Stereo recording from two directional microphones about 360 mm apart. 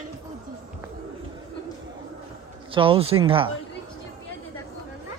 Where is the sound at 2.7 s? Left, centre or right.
Centre.